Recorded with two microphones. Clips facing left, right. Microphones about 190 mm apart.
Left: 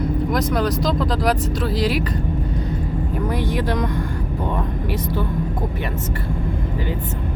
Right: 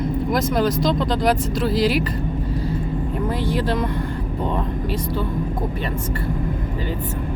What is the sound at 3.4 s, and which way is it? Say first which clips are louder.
Speech: even; 15° left (ahead or behind).